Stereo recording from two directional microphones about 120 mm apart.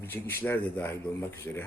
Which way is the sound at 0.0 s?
20° left (ahead or behind).